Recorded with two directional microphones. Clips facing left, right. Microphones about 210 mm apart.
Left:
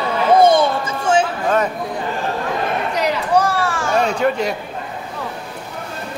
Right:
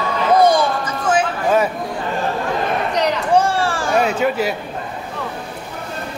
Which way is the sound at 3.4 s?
30° right (ahead or behind).